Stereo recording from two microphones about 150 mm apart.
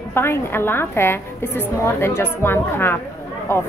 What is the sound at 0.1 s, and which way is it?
A woman's voice, 15° left (ahead or behind).